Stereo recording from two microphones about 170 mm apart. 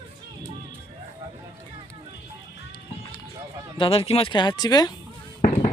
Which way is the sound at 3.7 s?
30° left (ahead or behind).